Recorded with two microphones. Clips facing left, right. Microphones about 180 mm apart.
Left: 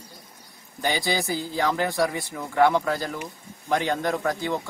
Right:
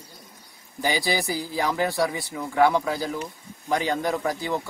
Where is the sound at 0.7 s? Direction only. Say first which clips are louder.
Right 1 dB; 10° right (ahead or behind).